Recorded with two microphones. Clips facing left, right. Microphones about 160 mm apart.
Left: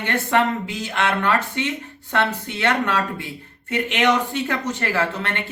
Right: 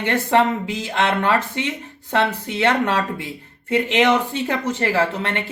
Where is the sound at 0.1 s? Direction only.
25° right (ahead or behind).